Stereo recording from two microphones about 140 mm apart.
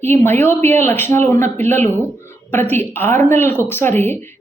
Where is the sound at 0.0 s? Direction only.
15° left (ahead or behind).